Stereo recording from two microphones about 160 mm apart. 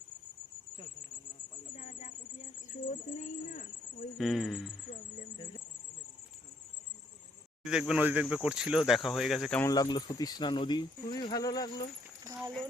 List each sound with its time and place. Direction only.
1.7 s a sound: 45° left (ahead or behind)
2.8 s speech: 45° left (ahead or behind)
4.2 s speech: centre (ahead or behind)
7.6 s speech: 5° right (ahead or behind)
9.6 s speech: 20° left (ahead or behind)